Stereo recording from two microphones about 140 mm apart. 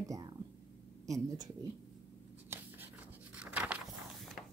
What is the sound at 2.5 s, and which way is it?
Writing, 15° right (ahead or behind).